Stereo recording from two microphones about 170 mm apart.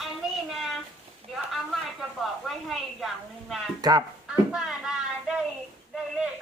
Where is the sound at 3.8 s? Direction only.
25° right (ahead or behind).